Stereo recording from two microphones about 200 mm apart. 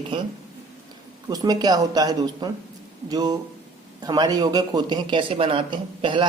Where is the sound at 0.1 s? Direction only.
25° right (ahead or behind).